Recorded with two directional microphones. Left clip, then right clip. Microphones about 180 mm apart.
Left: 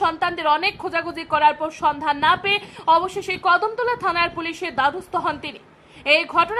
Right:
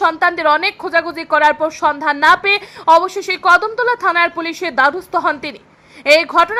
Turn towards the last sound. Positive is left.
turn(degrees=-20)  # may be behind; listen again after turning